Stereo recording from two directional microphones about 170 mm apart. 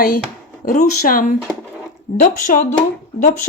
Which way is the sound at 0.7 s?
50° left (ahead or behind).